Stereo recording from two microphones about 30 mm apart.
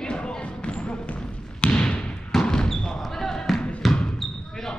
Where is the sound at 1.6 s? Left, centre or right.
Left.